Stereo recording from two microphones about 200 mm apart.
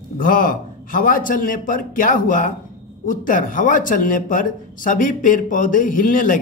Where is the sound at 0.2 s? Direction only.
45° left (ahead or behind).